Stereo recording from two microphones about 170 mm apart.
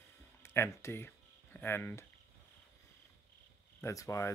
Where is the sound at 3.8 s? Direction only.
20° left (ahead or behind).